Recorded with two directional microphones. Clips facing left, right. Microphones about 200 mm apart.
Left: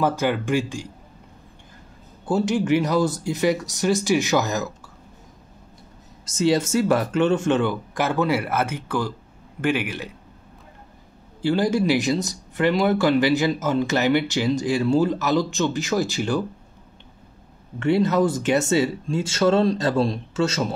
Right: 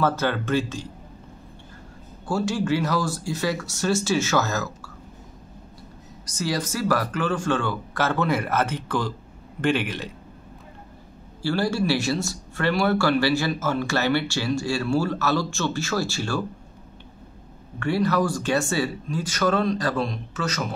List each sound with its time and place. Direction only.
0.0 s speech: 15° left (ahead or behind)
2.2 s speech: 20° left (ahead or behind)
6.2 s speech: 25° left (ahead or behind)
11.4 s speech: 20° left (ahead or behind)
17.7 s speech: 20° left (ahead or behind)